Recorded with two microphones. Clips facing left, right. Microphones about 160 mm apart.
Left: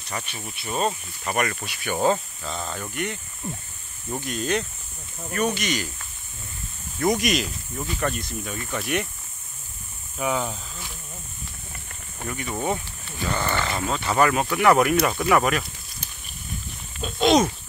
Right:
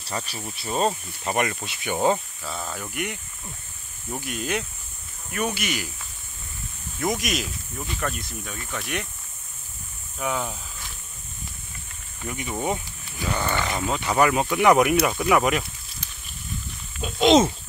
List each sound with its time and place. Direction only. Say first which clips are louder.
0.0 s speech: right 2 dB; 35° right (ahead or behind); by 2.1 s 15° right (ahead or behind)
2.4 s speech: left 1 dB; 5° right (ahead or behind)
7.0 s speech: left 4 dB; centre (ahead or behind)
10.1 s speech: left 2 dB; 5° left (ahead or behind)
12.3 s speech: even; 15° right (ahead or behind)
17.0 s a sound: right 2 dB; 20° right (ahead or behind)